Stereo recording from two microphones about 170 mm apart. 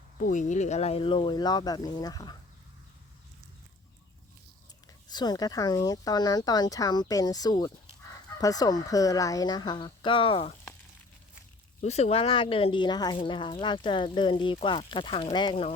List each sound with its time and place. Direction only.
0.2 s speech: 50° left (ahead or behind); by 2.4 s 25° left (ahead or behind)
5.0 s speech: 25° left (ahead or behind)
11.8 s speech: 40° left (ahead or behind)